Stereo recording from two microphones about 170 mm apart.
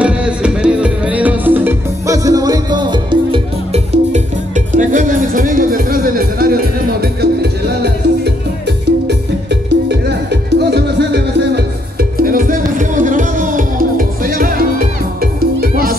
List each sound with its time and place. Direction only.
0.0 s music: 5° right (ahead or behind); by 8.3 s 70° right (ahead or behind)
9.0 s music: 85° right; by 16.0 s 60° right (ahead or behind)